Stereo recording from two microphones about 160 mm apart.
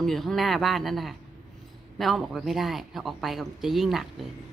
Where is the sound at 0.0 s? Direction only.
Centre (ahead or behind).